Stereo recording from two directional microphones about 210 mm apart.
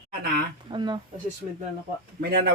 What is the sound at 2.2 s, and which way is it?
Speech, 45° right (ahead or behind).